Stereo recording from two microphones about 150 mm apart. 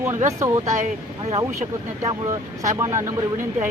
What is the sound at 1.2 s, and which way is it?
Speech, 40° right (ahead or behind).